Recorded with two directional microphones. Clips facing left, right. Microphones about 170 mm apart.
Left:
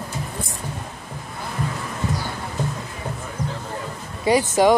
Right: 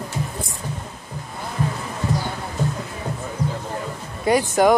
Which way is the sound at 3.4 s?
20° left (ahead or behind).